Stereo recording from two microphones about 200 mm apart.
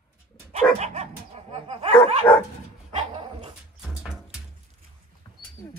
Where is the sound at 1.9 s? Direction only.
5° left (ahead or behind).